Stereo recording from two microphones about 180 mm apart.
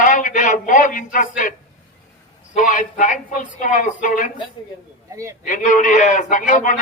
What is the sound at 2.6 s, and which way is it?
A man's voice, 50° left (ahead or behind).